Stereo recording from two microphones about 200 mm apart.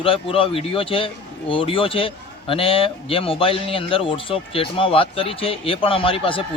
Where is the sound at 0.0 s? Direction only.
25° left (ahead or behind).